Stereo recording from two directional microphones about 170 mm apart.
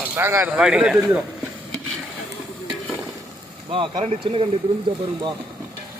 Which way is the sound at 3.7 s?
30° right (ahead or behind).